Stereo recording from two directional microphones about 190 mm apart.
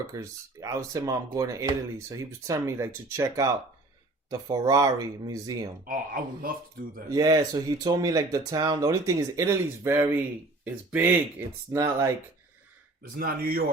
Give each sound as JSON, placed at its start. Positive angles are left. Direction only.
{"t": 0.1, "sound": "speech", "side_deg": -15}
{"t": 5.9, "sound": "a man's voice", "side_deg": -45}
{"t": 7.1, "sound": "speech", "side_deg": -20}
{"t": 13.0, "sound": "a man's voice", "side_deg": -50}